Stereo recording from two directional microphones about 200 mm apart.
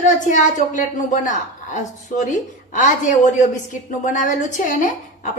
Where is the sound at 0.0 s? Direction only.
40° left (ahead or behind).